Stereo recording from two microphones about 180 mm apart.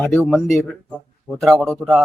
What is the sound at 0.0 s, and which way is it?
Speech, 10° left (ahead or behind).